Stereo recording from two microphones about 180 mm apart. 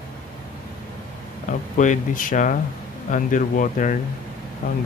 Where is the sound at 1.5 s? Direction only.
45° left (ahead or behind).